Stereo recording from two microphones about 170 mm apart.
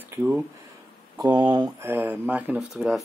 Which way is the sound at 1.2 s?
25° right (ahead or behind).